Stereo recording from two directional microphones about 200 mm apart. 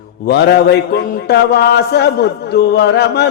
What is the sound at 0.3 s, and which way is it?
A man's voice, 55° left (ahead or behind).